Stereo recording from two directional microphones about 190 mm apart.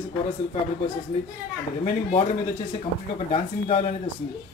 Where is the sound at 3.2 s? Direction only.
30° left (ahead or behind).